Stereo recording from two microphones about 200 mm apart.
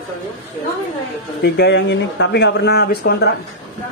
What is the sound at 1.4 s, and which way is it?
Speech, 55° left (ahead or behind).